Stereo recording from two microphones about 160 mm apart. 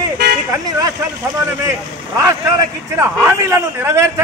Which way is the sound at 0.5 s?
20° right (ahead or behind).